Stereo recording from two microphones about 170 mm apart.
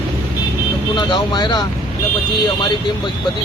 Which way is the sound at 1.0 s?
25° left (ahead or behind).